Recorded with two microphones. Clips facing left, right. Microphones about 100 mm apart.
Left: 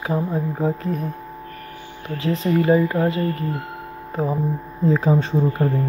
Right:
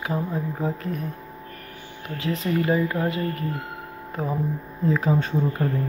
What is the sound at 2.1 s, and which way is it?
Speech, 30° left (ahead or behind).